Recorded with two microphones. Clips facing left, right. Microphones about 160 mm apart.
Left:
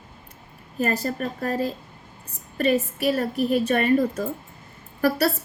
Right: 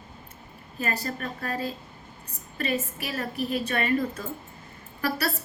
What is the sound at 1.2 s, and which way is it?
A woman's voice, 40° left (ahead or behind).